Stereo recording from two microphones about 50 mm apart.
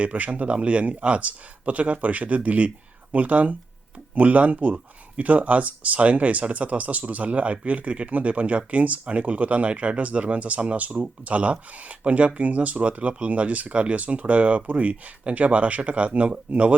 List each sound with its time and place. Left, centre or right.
0.0 s speech: right